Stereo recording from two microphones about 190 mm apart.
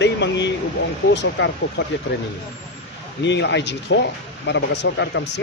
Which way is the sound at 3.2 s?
70° left (ahead or behind).